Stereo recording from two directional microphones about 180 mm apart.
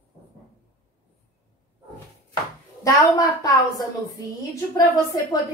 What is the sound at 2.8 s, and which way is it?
A woman's voice, 20° left (ahead or behind).